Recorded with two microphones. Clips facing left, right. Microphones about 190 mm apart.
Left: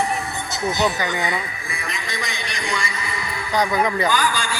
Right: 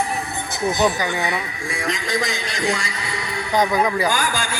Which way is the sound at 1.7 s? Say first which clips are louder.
Right 6 dB; 85° right.